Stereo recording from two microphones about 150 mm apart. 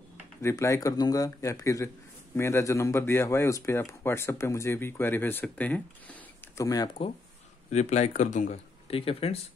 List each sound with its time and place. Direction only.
0.4 s speech: 20° left (ahead or behind)
6.6 s speech: 25° left (ahead or behind)
7.7 s speech: 50° left (ahead or behind)
8.8 s speech: 40° left (ahead or behind)